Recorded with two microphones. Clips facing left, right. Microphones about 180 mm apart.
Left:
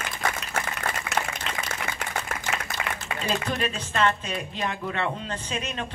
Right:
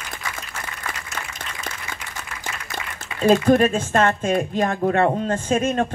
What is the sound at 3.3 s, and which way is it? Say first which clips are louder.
Speech: right 13 dB; 50° right (ahead or behind).